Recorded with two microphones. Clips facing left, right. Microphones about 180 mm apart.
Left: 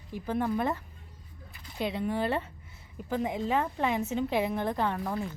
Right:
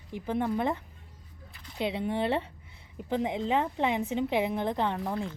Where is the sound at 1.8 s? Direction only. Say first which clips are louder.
Right 1 dB; 20° right (ahead or behind).